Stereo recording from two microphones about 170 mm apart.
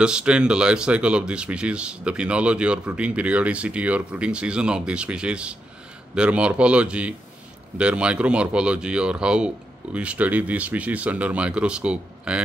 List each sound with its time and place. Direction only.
0.0 s speech: 5° right (ahead or behind)